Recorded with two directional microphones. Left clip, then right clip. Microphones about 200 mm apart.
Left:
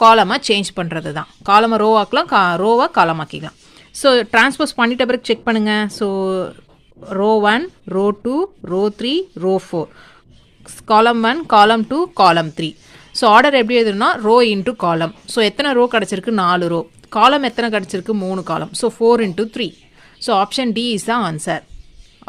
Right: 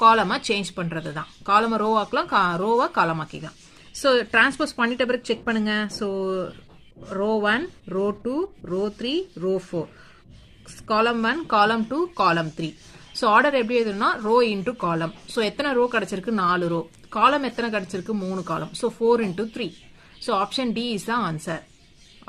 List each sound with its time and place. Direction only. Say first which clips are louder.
0.0 s speech: left 7 dB; 40° left (ahead or behind)
10.8 s speech: left 9 dB; 45° left (ahead or behind)